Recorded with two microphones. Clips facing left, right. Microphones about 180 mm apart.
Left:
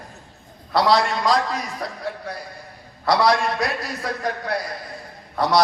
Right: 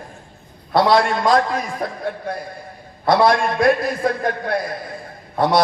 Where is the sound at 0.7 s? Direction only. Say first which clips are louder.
Right 3 dB; 50° right (ahead or behind).